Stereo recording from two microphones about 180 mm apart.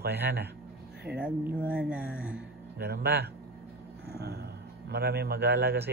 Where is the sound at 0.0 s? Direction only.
65° right (ahead or behind).